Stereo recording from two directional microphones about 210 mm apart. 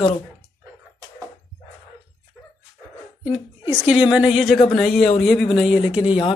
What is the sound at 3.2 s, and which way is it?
A woman's voice, 5° right (ahead or behind).